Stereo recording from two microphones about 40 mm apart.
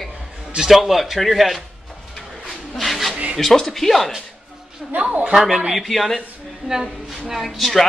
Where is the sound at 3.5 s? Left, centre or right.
Centre.